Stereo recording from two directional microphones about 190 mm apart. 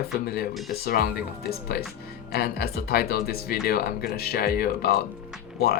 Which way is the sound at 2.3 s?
55° left (ahead or behind).